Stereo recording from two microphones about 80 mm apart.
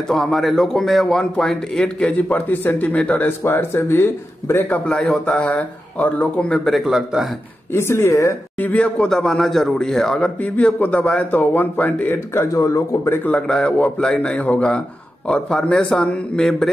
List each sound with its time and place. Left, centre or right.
0.1 s a man's voice: centre
3.3 s speech: left
6.6 s a man's voice: centre
7.7 s speech: left
8.5 s speech: centre
10.4 s speech: centre
12.5 s speech: left
13.3 s speech: centre